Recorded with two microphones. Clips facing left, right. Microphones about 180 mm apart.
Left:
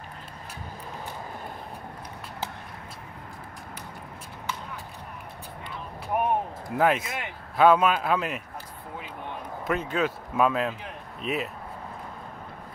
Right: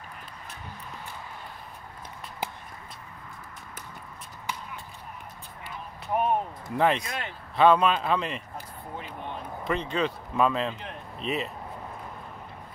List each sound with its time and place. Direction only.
6.1 s a sound: 15° left (ahead or behind)
6.8 s a man's voice: 5° left (ahead or behind)
9.7 s speech: 5° left (ahead or behind)